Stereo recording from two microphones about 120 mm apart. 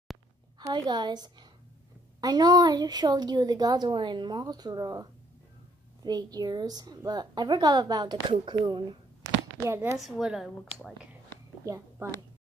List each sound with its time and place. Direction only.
0.6 s a woman's voice: 35° right (ahead or behind)
6.0 s a woman's voice: 35° right (ahead or behind)
9.9 s a woman's voice: centre (ahead or behind)
11.6 s a woman's voice: 25° right (ahead or behind)